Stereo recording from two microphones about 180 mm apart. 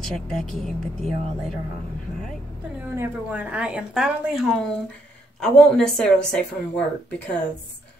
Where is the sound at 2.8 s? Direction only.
10° right (ahead or behind).